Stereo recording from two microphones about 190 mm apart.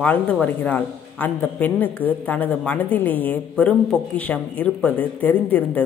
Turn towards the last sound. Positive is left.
turn(degrees=10)  # may be behind; listen again after turning